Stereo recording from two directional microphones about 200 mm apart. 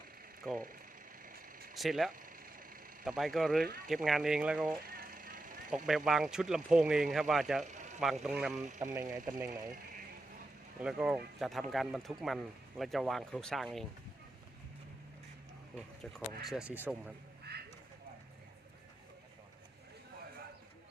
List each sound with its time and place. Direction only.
1.2 s vehicle: 45° right (ahead or behind)
1.7 s speech: centre (ahead or behind)
2.1 s vehicle: 45° right (ahead or behind)
3.0 s speech: centre (ahead or behind)
4.9 s vehicle: 45° right (ahead or behind)
5.7 s speech: centre (ahead or behind)
7.7 s a sound: 35° right (ahead or behind)
8.0 s speech: centre (ahead or behind)
8.8 s speech: 15° right (ahead or behind)
10.8 s speech: 5° right (ahead or behind)
16.1 s speech: centre (ahead or behind)
17.5 s a sound: 55° right (ahead or behind)